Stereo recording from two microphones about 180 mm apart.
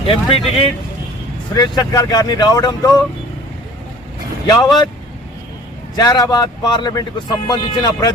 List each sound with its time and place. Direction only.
0.0 s speech: 30° left (ahead or behind)
4.4 s speech: 25° left (ahead or behind)
6.0 s speech: 20° left (ahead or behind)